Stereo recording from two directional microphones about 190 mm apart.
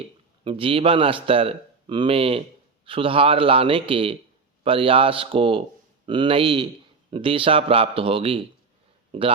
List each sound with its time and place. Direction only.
0.4 s speech: 30° right (ahead or behind)